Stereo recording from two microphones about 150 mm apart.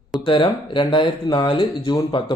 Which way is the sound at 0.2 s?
35° left (ahead or behind).